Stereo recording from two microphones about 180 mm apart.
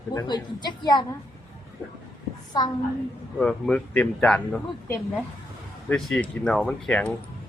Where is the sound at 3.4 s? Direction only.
5° left (ahead or behind).